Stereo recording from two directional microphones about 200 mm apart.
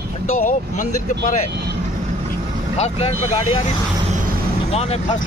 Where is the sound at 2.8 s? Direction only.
35° left (ahead or behind).